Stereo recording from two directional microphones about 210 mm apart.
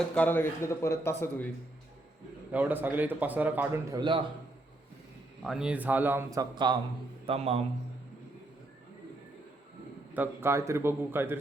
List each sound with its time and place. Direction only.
0.1 s speech: 10° left (ahead or behind)
2.5 s a man's voice: 5° right (ahead or behind)
4.0 s a man's voice: 20° right (ahead or behind)
5.4 s a man's voice: 5° right (ahead or behind); by 7.6 s 30° right (ahead or behind)
10.2 s a man's voice: 10° right (ahead or behind)